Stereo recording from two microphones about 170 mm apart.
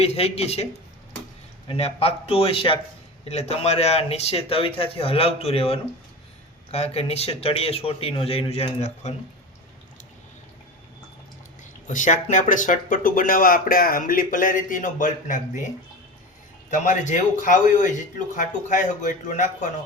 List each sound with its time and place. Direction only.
0.0 s speech: 35° left (ahead or behind)
11.9 s speech: 50° left (ahead or behind)
16.6 s speech: 50° left (ahead or behind)